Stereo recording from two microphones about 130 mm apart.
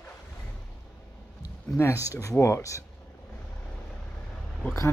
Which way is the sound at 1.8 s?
20° left (ahead or behind).